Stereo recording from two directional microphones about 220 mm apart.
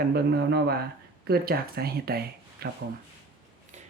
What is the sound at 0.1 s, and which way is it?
Speech, 45° right (ahead or behind).